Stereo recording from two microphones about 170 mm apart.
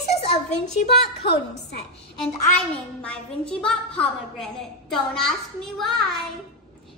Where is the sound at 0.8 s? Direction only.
75° left (ahead or behind).